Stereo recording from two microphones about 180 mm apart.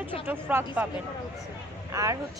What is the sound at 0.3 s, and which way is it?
Speech, 10° right (ahead or behind).